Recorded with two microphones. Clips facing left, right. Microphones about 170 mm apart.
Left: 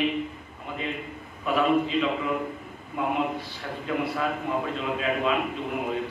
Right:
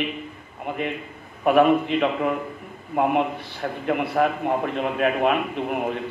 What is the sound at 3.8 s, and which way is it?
A man's voice, 60° right (ahead or behind).